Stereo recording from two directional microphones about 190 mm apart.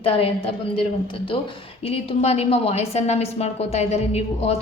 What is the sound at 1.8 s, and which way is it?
A woman's voice, 30° left (ahead or behind).